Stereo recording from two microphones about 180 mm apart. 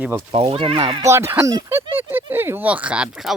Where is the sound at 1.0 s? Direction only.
15° right (ahead or behind).